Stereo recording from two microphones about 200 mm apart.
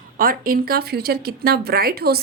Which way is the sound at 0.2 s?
45° right (ahead or behind).